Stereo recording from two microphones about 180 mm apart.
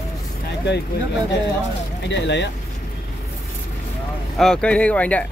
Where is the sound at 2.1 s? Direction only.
75° left (ahead or behind).